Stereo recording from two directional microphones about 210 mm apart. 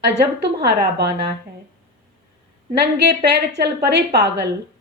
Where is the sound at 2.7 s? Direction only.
50° right (ahead or behind).